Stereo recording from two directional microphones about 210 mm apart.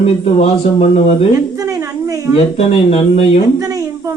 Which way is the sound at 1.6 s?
15° right (ahead or behind).